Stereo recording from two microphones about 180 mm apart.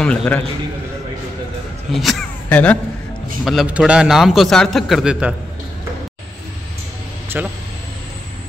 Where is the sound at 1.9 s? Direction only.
Centre (ahead or behind).